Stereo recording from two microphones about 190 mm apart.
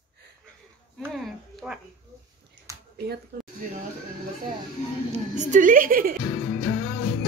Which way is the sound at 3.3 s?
60° right (ahead or behind).